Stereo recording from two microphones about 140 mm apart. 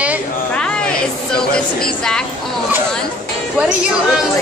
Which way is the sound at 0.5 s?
5° left (ahead or behind).